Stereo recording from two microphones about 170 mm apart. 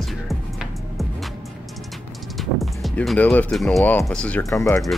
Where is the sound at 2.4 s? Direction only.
Centre (ahead or behind); by 4.8 s 15° left (ahead or behind).